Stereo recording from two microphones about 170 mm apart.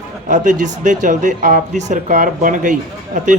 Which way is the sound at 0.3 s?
45° right (ahead or behind).